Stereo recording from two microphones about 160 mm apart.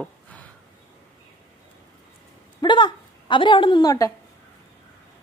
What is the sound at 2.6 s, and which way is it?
A woman's voice, 30° left (ahead or behind).